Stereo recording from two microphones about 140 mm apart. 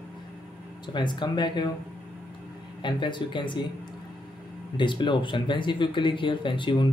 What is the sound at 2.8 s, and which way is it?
Speech, 35° left (ahead or behind).